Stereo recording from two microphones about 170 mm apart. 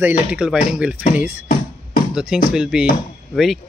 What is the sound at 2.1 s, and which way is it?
Speech, 5° right (ahead or behind).